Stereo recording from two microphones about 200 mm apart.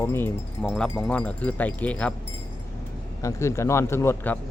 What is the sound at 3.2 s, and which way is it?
Speech, 15° left (ahead or behind).